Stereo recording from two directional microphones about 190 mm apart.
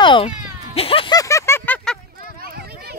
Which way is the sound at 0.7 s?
30° left (ahead or behind).